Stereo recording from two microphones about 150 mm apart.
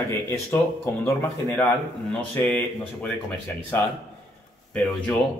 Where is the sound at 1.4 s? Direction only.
5° left (ahead or behind).